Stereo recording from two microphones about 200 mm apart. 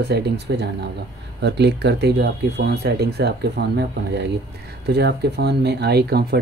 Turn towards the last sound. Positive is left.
turn(degrees=-55)  # may be behind; listen again after turning